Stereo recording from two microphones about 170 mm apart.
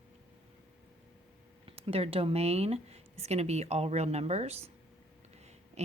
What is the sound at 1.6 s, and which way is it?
Speech, 35° right (ahead or behind).